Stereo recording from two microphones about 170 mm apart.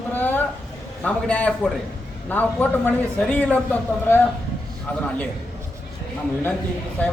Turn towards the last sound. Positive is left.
turn(degrees=10)  # may be behind; listen again after turning